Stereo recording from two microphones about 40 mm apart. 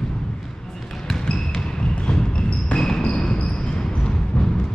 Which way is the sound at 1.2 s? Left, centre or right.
Left.